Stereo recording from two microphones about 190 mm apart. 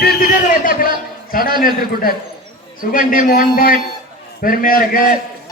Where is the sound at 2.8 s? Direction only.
45° left (ahead or behind).